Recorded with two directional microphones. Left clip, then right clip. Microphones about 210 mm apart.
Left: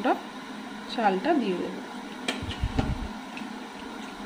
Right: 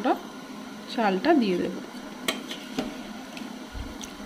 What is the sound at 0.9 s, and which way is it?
Speech, 10° right (ahead or behind).